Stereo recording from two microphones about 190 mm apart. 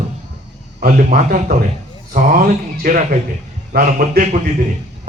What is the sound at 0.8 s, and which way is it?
Speech, 45° right (ahead or behind).